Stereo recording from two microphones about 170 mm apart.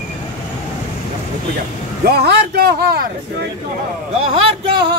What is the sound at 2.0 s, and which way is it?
Speech, 70° right (ahead or behind).